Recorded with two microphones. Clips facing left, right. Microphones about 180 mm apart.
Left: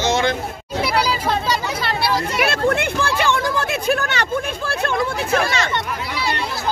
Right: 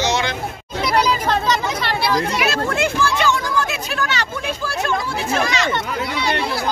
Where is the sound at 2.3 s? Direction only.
55° left (ahead or behind).